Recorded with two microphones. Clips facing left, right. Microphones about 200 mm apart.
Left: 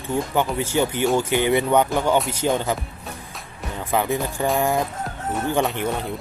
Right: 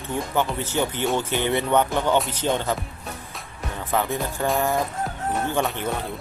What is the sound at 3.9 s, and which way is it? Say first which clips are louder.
Speech: left 2 dB; 15° left (ahead or behind).